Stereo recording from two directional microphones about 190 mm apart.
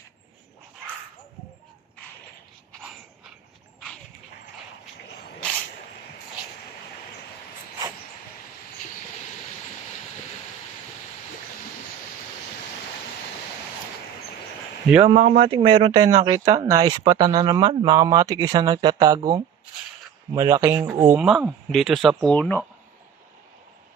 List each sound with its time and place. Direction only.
15.0 s speech: 30° right (ahead or behind); by 21.0 s 15° right (ahead or behind)
21.1 s speech: 5° right (ahead or behind)